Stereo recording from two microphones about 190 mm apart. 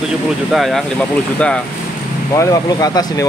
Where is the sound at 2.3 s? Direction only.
20° left (ahead or behind).